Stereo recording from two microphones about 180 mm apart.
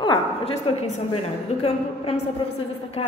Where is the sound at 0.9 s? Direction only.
35° left (ahead or behind).